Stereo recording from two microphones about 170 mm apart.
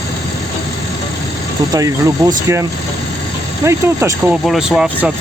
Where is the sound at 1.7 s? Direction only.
20° right (ahead or behind).